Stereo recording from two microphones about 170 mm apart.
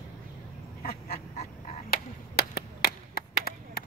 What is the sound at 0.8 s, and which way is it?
Duck, 65° left (ahead or behind).